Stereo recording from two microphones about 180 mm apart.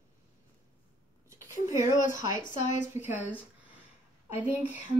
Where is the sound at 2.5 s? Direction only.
40° left (ahead or behind).